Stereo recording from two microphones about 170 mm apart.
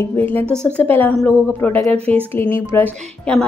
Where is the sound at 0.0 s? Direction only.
10° left (ahead or behind).